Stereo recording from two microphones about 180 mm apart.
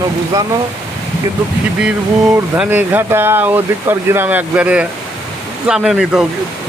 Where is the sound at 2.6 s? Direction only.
10° right (ahead or behind).